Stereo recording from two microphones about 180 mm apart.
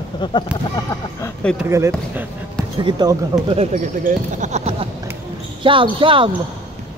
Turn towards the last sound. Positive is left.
turn(degrees=-30)  # may be behind; listen again after turning